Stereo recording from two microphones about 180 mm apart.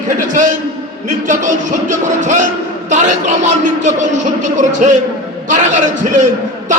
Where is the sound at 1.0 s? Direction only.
45° right (ahead or behind).